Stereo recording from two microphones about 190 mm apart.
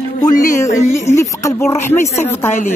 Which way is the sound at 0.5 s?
15° left (ahead or behind).